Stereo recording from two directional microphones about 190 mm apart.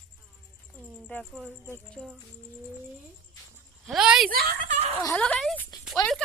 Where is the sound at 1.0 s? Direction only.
Centre (ahead or behind).